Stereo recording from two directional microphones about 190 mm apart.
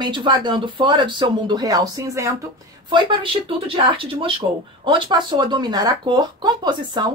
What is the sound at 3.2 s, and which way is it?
A woman's voice, 25° right (ahead or behind).